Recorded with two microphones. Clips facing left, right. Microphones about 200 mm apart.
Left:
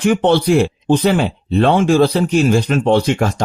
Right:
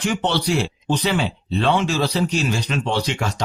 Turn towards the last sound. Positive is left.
turn(degrees=50)  # may be behind; listen again after turning